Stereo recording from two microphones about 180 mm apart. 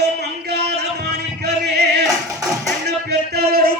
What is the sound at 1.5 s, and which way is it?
Music, 65° right (ahead or behind).